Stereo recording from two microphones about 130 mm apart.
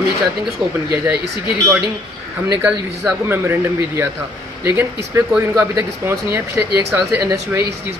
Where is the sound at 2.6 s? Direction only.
15° right (ahead or behind).